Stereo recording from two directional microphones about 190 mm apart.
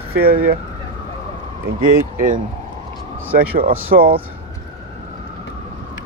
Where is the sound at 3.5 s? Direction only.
50° right (ahead or behind).